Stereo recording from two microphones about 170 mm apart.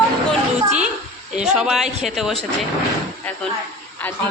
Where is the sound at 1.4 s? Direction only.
5° right (ahead or behind).